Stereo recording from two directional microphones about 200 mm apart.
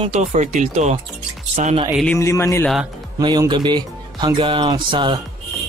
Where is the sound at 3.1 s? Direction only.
20° right (ahead or behind).